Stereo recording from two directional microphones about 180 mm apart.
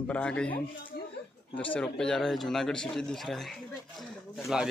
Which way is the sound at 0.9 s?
60° left (ahead or behind).